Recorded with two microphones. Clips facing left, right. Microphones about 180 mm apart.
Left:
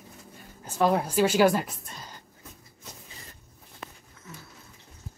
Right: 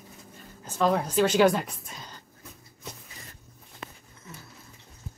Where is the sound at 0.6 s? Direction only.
10° left (ahead or behind).